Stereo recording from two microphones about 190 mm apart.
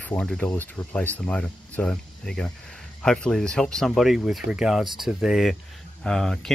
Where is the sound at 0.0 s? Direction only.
5° left (ahead or behind).